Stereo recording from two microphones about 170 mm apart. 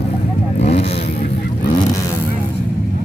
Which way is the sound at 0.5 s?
40° left (ahead or behind).